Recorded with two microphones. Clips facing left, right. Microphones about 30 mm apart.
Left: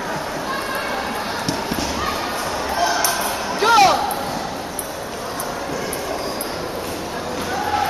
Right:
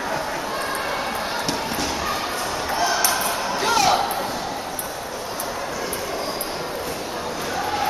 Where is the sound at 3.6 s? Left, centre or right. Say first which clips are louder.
Left 7 dB; left.